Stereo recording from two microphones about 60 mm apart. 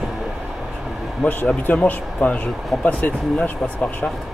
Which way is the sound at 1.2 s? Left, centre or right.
Left.